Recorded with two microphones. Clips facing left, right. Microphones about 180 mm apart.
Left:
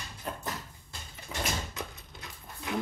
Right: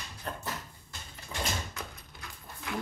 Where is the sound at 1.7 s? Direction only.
20° left (ahead or behind).